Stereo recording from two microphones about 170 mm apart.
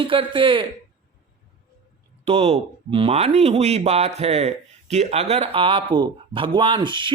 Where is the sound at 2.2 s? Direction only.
35° right (ahead or behind).